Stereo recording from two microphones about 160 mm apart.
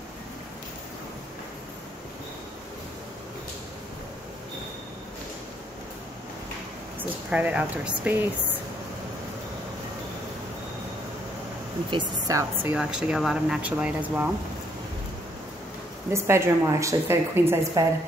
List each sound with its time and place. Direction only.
7.0 s speech: 10° right (ahead or behind)
11.9 s speech: 20° right (ahead or behind)
12.7 s speech: 5° right (ahead or behind)
16.1 s speech: 15° right (ahead or behind)